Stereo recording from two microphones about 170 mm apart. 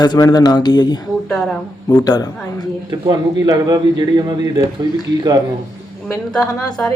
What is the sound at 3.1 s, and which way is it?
Speech, 25° right (ahead or behind).